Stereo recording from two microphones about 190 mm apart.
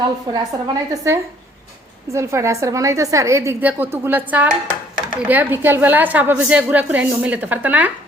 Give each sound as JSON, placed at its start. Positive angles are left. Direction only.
{"t": 0.3, "sound": "a woman's voice", "side_deg": -20}